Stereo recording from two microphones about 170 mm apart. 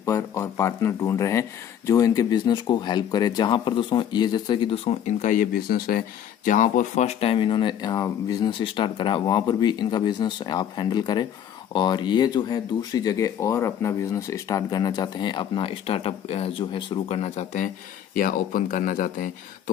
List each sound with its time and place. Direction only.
0.0 s speech: 15° left (ahead or behind); by 17.6 s 40° left (ahead or behind)
18.1 s speech: 55° left (ahead or behind)